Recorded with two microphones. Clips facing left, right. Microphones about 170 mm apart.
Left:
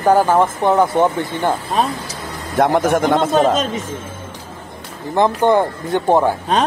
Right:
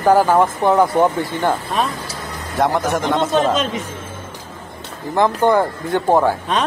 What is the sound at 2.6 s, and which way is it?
A man's voice, 50° left (ahead or behind).